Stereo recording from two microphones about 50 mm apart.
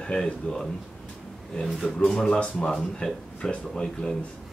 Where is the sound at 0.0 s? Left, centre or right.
Centre.